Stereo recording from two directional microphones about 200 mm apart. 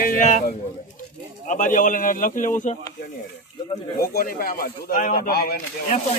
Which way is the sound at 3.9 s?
45° left (ahead or behind).